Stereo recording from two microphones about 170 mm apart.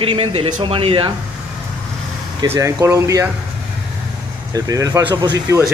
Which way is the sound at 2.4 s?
15° right (ahead or behind).